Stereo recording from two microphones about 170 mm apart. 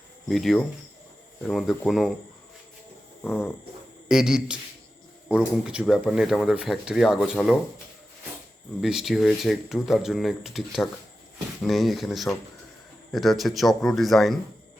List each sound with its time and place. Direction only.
0.3 s speech: centre (ahead or behind)
3.2 s a sound: 10° left (ahead or behind)
4.1 s speech: 5° right (ahead or behind)
8.8 s speech: centre (ahead or behind)